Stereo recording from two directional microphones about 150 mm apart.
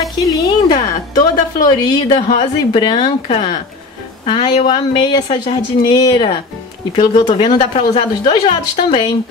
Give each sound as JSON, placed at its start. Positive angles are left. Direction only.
{"t": 0.5, "sound": "a woman's voice", "side_deg": 25}
{"t": 4.6, "sound": "speech", "side_deg": 30}